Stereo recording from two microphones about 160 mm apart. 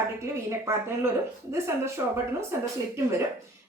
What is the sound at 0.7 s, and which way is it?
Speech, 15° right (ahead or behind).